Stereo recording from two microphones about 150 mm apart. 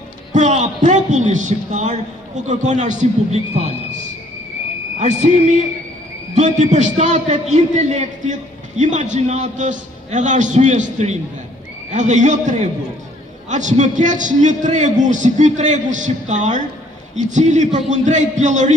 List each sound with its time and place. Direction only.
0.3 s a man's voice: 50° right (ahead or behind)
6.3 s a man's voice: 50° right (ahead or behind)